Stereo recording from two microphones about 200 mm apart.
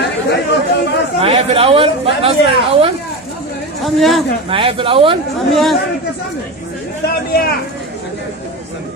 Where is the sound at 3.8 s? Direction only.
Centre (ahead or behind).